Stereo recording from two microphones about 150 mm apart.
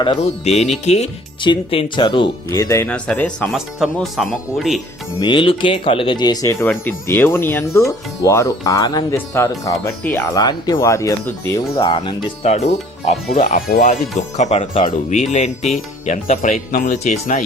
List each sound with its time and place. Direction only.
0.2 s speech: 45° left (ahead or behind)
1.4 s speech: 35° left (ahead or behind)
2.5 s speech: 20° left (ahead or behind)
2.9 s speech: 5° left (ahead or behind)
5.2 s speech: 30° left (ahead or behind); by 10.2 s 15° left (ahead or behind)
10.3 s speech: 25° left (ahead or behind)
11.7 s speech: 35° left (ahead or behind)
14.8 s speech: 55° left (ahead or behind)